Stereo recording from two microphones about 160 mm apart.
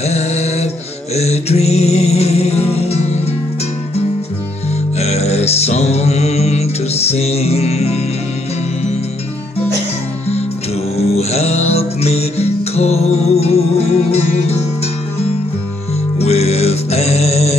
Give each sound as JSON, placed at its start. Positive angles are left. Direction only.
{"t": 0.0, "sound": "a sound", "side_deg": 40}
{"t": 1.1, "sound": "music", "side_deg": 40}
{"t": 4.9, "sound": "music", "side_deg": 40}
{"t": 11.0, "sound": "music", "side_deg": 40}
{"t": 16.2, "sound": "music", "side_deg": 40}